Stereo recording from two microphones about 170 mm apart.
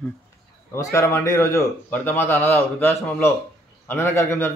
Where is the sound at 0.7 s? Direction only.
15° left (ahead or behind).